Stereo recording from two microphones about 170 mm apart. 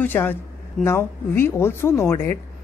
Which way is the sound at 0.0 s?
10° left (ahead or behind).